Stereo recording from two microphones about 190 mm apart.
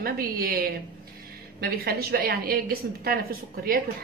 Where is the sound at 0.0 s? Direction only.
50° right (ahead or behind).